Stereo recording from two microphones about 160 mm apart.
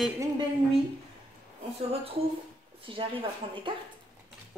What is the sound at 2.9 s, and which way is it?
Speech, 35° right (ahead or behind).